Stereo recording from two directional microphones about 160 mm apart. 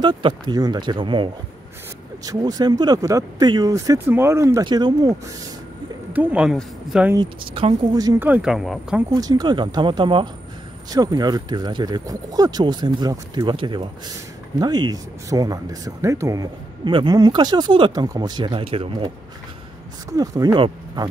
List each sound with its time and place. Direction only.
0.0 s speech: 30° right (ahead or behind)
6.1 s speech: 5° right (ahead or behind)
7.2 s speech: 30° right (ahead or behind)
8.2 s speech: 5° right (ahead or behind)
9.1 s speech: 25° right (ahead or behind)